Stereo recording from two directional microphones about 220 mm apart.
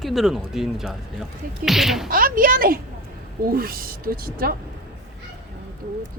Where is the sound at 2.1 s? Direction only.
40° right (ahead or behind).